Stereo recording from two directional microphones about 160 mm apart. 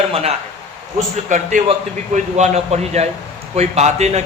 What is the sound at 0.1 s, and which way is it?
Speech, 40° right (ahead or behind).